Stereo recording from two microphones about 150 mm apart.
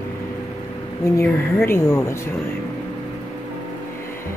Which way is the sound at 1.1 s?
15° left (ahead or behind).